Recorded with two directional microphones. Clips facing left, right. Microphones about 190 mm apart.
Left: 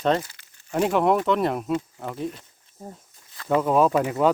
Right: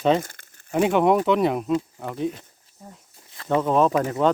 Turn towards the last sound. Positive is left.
turn(degrees=10)  # may be behind; listen again after turning